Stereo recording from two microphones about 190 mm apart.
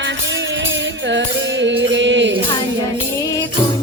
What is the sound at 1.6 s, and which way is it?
Music, 70° right (ahead or behind).